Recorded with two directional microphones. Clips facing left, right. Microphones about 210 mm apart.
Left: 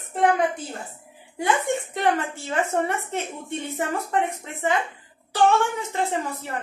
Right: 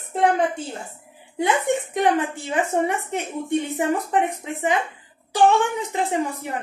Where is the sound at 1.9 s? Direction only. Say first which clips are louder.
Right 3 dB; 15° right (ahead or behind).